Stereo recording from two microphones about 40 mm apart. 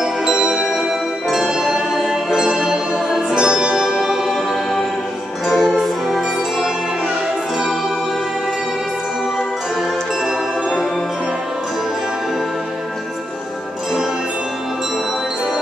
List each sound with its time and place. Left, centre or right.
0.0 s music: centre
5.5 s music: centre